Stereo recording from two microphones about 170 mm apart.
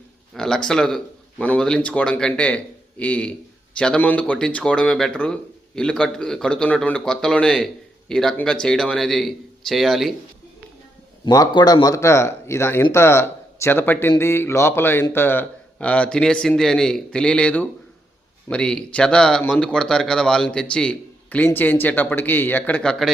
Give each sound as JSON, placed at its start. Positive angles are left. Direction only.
{"t": 0.3, "sound": "speech", "side_deg": 5}
{"t": 11.3, "sound": "speech", "side_deg": 20}